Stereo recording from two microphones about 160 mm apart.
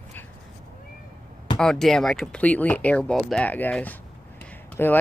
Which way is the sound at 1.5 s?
5° left (ahead or behind).